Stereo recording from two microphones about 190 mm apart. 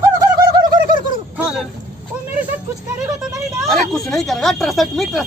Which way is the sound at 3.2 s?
Centre (ahead or behind).